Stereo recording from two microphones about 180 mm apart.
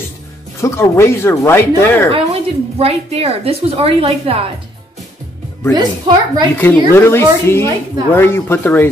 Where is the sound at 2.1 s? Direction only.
35° right (ahead or behind).